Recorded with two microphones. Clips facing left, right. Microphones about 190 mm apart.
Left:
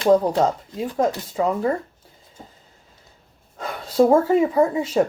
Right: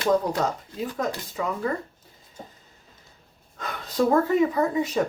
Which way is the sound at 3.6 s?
30° left (ahead or behind).